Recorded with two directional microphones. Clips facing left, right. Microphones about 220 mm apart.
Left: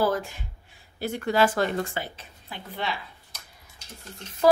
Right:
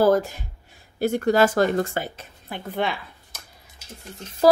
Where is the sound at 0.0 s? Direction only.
40° right (ahead or behind).